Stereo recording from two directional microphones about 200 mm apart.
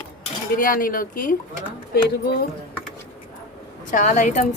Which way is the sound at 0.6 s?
45° left (ahead or behind).